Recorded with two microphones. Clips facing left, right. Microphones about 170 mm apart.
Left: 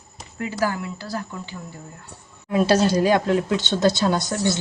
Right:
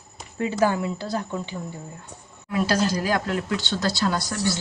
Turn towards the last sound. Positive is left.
turn(degrees=20)  # may be behind; listen again after turning